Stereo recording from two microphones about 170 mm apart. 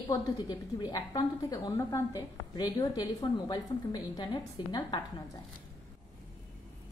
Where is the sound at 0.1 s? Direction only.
25° left (ahead or behind).